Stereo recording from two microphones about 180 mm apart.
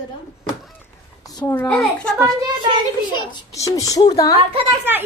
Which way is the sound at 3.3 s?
20° left (ahead or behind).